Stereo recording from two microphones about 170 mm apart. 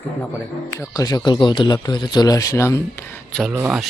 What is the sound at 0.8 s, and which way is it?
Speech, 20° left (ahead or behind).